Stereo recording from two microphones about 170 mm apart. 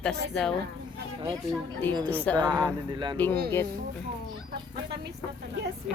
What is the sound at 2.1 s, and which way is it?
Speech, 10° left (ahead or behind).